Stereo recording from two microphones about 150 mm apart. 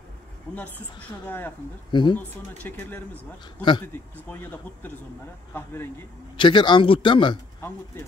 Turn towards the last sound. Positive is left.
turn(degrees=30)  # may be behind; listen again after turning